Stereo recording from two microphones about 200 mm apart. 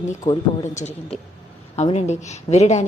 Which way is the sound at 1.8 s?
35° left (ahead or behind).